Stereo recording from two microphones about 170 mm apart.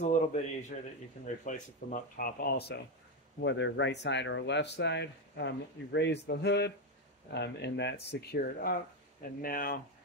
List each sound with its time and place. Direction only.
0.0 s a man's voice: 45° left (ahead or behind); by 2.8 s 70° left (ahead or behind)
3.4 s speech: 90° left; by 9.8 s 60° left (ahead or behind)